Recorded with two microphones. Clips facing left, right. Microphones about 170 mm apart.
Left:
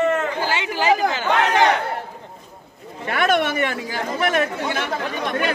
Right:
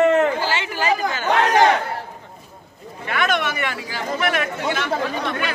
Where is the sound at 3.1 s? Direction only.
35° left (ahead or behind).